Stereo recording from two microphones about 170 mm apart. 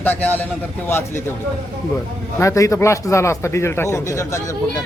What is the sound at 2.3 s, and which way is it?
Speech, 15° left (ahead or behind).